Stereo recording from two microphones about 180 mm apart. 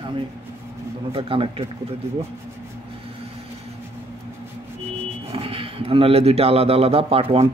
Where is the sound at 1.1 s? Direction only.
30° right (ahead or behind).